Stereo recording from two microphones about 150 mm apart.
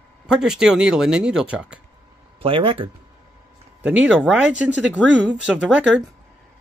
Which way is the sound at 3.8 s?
10° right (ahead or behind).